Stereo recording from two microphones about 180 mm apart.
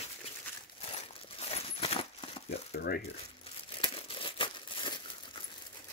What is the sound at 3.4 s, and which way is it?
Crumpling, 30° left (ahead or behind).